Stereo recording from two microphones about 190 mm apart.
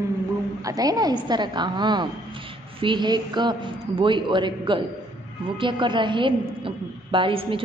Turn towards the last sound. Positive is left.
turn(degrees=-25)  # may be behind; listen again after turning